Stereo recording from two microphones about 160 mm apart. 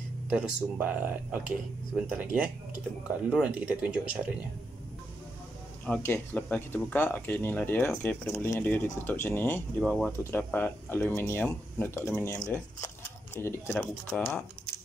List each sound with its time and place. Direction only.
0.3 s speech: 5° right (ahead or behind)
5.9 s speech: 10° left (ahead or behind)